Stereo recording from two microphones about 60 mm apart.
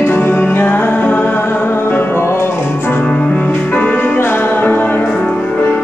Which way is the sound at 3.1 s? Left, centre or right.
Left.